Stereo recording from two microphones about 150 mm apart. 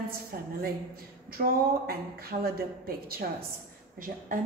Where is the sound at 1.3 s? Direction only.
85° right.